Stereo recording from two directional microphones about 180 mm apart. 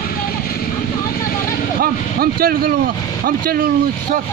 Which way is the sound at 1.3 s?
50° left (ahead or behind).